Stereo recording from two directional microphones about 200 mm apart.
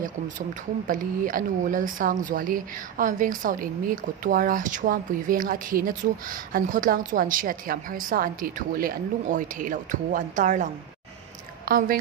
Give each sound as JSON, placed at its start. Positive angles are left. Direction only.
{"t": 0.8, "sound": "a woman's voice", "side_deg": -40}